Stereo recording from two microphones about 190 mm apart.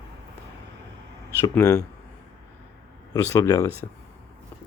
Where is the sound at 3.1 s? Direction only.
15° left (ahead or behind).